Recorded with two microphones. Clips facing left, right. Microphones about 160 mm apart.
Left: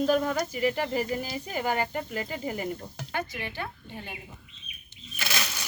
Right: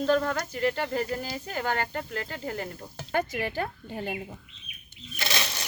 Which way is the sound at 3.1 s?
45° right (ahead or behind).